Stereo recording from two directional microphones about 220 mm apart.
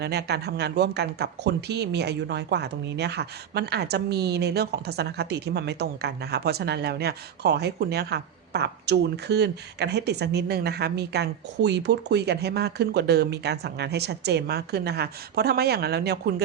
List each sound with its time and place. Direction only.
0.0 s speech: 50° right (ahead or behind)